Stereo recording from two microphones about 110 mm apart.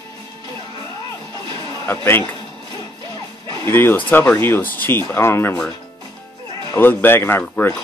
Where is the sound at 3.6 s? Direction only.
20° left (ahead or behind).